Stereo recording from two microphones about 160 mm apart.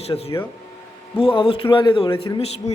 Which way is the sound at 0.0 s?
40° left (ahead or behind).